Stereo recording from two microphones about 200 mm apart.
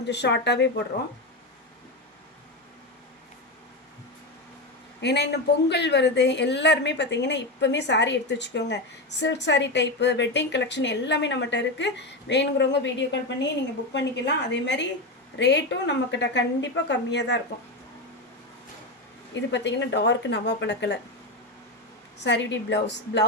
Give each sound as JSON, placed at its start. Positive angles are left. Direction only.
{"t": 0.1, "sound": "a woman's voice", "side_deg": 55}
{"t": 4.9, "sound": "a woman's voice", "side_deg": 60}
{"t": 19.3, "sound": "a woman's voice", "side_deg": 60}
{"t": 22.2, "sound": "a woman's voice", "side_deg": 60}